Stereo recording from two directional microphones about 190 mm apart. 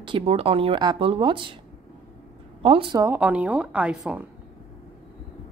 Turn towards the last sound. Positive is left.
turn(degrees=-5)  # may be behind; listen again after turning